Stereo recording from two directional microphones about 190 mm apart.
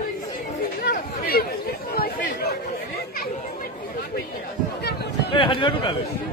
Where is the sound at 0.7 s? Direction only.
50° left (ahead or behind).